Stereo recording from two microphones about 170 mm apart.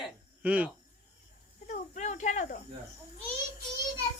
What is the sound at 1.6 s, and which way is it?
Speech, 45° left (ahead or behind).